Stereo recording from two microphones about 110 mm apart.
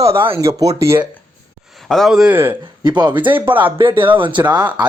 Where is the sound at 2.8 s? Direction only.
40° right (ahead or behind).